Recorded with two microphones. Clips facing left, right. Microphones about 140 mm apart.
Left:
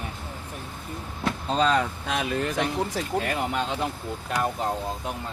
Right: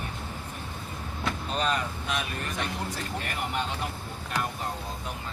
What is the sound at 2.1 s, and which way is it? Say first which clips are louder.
Speech: left 9 dB; 90° left.